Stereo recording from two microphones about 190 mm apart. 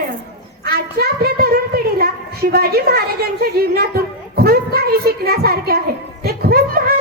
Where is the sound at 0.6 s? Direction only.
55° right (ahead or behind).